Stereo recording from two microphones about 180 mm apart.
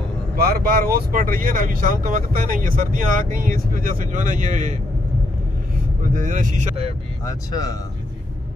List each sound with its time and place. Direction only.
0.4 s speech: 55° right (ahead or behind)
6.1 s speech: 45° right (ahead or behind)
7.2 s speech: 20° left (ahead or behind)